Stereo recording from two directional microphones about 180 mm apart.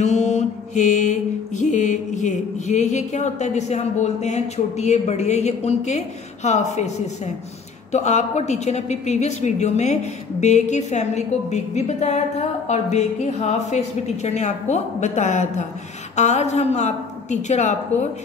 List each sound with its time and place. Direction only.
0.0 s mantra: 40° left (ahead or behind)
7.9 s a woman's voice: 40° left (ahead or behind)